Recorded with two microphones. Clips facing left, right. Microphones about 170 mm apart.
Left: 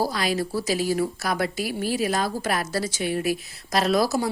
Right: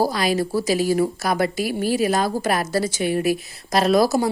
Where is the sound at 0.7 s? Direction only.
Centre (ahead or behind).